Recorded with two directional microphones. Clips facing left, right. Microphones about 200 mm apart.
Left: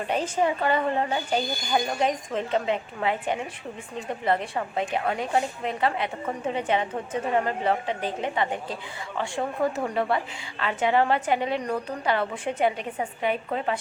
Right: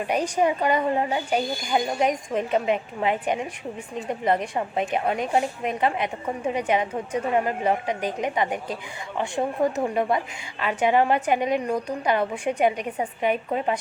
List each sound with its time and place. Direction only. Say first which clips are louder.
0.1 s a woman's voice: right 2 dB; 15° right (ahead or behind)